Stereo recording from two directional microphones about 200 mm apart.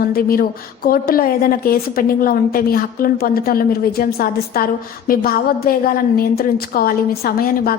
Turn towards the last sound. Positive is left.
turn(degrees=50)  # may be behind; listen again after turning